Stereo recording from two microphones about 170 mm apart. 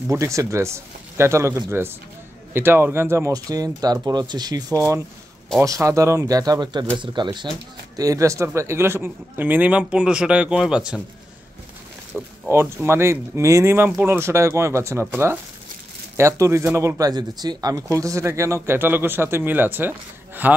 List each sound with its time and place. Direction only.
0.1 s speech: 15° right (ahead or behind)
12.4 s speech: 15° right (ahead or behind)